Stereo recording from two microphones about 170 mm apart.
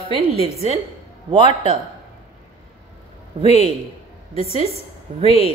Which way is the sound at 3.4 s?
40° left (ahead or behind).